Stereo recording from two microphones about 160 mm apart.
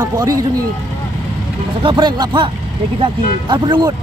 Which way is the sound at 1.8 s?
30° right (ahead or behind).